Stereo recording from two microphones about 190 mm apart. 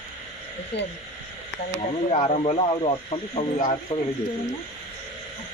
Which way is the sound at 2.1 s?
30° left (ahead or behind).